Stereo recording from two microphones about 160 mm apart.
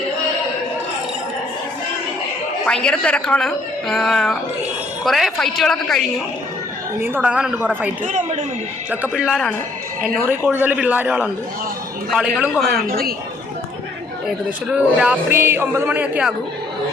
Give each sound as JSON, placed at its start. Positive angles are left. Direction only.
{"t": 2.6, "sound": "a woman's voice", "side_deg": 5}
{"t": 7.0, "sound": "a man's voice", "side_deg": -10}
{"t": 8.9, "sound": "a woman's voice", "side_deg": -5}
{"t": 12.9, "sound": "a man's voice", "side_deg": -70}
{"t": 14.3, "sound": "a man's voice", "side_deg": -5}